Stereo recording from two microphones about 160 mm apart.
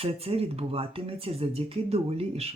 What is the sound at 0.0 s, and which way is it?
Speech, 35° right (ahead or behind).